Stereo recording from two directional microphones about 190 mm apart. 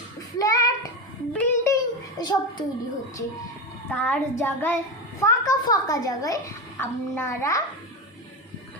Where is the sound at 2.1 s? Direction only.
20° left (ahead or behind).